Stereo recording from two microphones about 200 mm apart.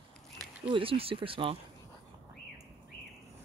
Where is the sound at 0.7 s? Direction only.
25° right (ahead or behind).